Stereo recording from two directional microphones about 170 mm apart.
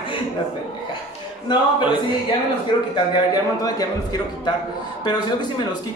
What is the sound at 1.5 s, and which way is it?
A man's voice, 30° left (ahead or behind).